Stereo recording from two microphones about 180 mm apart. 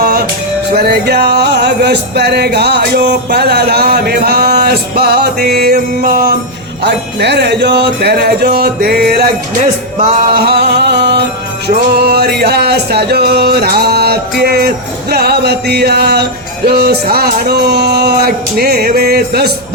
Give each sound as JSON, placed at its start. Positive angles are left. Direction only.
{"t": 0.0, "sound": "music", "side_deg": -60}
{"t": 6.8, "sound": "music", "side_deg": -70}
{"t": 10.3, "sound": "music", "side_deg": -60}